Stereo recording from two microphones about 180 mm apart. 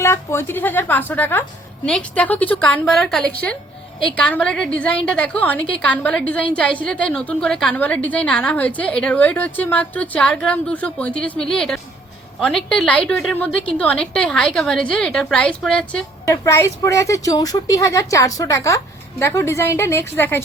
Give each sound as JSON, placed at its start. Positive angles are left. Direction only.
{"t": 0.0, "sound": "a woman's voice", "side_deg": 15}
{"t": 16.2, "sound": "a woman's voice", "side_deg": 15}